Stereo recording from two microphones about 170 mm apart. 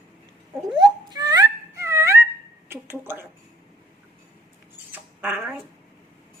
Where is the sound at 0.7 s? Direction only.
25° right (ahead or behind).